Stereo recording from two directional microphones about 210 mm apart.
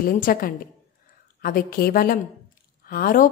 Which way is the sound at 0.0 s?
45° left (ahead or behind).